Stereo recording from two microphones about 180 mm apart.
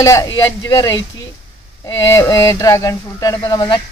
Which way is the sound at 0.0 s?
20° left (ahead or behind).